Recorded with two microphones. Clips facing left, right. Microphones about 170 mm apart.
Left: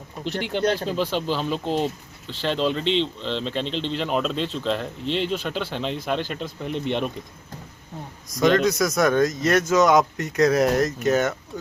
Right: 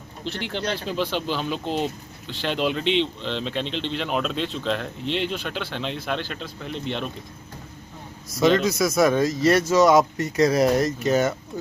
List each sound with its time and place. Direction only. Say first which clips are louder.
0.6 s speech: left 7 dB; 45° left (ahead or behind)
0.9 s speech: left 2 dB; centre (ahead or behind)
6.4 s speech: left 4 dB; 50° left (ahead or behind)
8.3 s speech: even; 5° right (ahead or behind)